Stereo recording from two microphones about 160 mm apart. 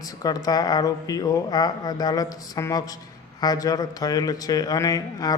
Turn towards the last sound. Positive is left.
turn(degrees=20)  # may be behind; listen again after turning